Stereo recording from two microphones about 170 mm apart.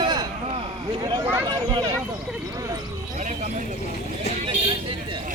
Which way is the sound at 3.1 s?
45° right (ahead or behind).